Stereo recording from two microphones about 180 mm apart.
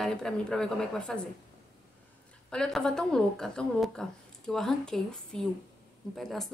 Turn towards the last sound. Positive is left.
turn(degrees=0)  # may be behind; listen again after turning